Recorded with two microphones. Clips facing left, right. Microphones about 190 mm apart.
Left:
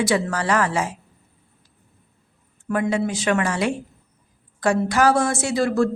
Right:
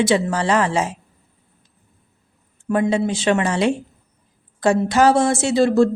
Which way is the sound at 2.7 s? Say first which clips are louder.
Right 3 dB; 25° right (ahead or behind).